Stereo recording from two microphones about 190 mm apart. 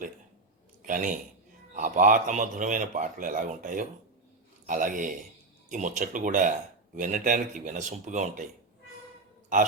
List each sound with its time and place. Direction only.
0.9 s a man's voice: 45° right (ahead or behind)